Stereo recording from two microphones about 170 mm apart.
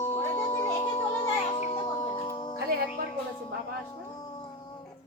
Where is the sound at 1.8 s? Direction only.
25° left (ahead or behind).